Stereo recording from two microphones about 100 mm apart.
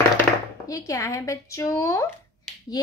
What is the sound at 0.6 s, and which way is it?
Speech, 35° left (ahead or behind).